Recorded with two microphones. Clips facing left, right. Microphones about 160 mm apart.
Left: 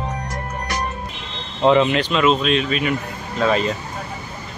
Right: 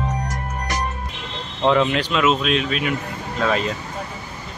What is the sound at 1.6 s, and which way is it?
Speech, 5° left (ahead or behind).